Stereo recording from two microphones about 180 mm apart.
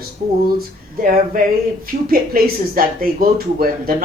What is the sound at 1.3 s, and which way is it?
Speech, 50° right (ahead or behind).